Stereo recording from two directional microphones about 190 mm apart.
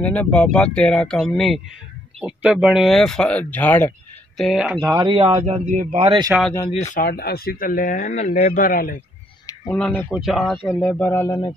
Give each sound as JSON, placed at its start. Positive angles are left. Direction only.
{"t": 0.0, "sound": "speech", "side_deg": 5}
{"t": 4.4, "sound": "speech", "side_deg": 0}
{"t": 4.7, "sound": "speech", "side_deg": -20}
{"t": 5.4, "sound": "a man's voice", "side_deg": -40}
{"t": 6.7, "sound": "speech", "side_deg": 40}
{"t": 7.1, "sound": "a man's voice", "side_deg": 55}
{"t": 9.8, "sound": "speech", "side_deg": 10}
{"t": 10.1, "sound": "speech", "side_deg": 0}